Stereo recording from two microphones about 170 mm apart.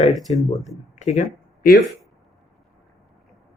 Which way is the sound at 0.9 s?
45° left (ahead or behind).